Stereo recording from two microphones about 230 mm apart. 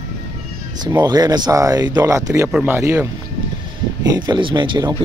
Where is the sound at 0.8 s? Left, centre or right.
Centre.